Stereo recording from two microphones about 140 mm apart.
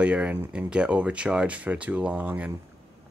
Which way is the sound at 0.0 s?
10° right (ahead or behind).